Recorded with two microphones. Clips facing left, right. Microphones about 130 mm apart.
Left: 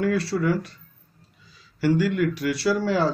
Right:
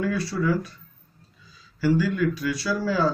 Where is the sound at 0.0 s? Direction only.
75° left (ahead or behind).